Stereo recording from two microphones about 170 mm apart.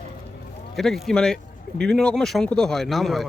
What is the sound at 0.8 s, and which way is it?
A man's voice, centre (ahead or behind).